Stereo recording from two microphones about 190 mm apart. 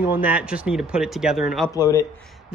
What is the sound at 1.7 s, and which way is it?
Speech, 20° left (ahead or behind).